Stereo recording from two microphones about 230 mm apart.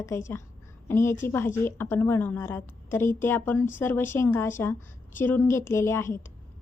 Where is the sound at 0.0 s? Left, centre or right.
Centre.